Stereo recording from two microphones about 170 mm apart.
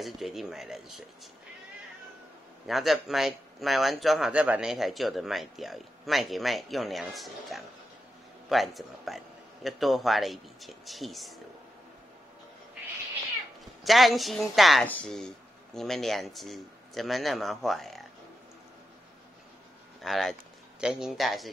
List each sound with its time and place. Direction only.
0.0 s speech: centre (ahead or behind)
2.6 s speech: centre (ahead or behind)
13.8 s speech: centre (ahead or behind)
20.0 s speech: centre (ahead or behind)